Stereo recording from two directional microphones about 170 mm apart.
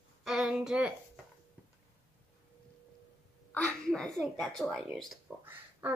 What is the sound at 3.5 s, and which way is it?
Speech, 5° left (ahead or behind).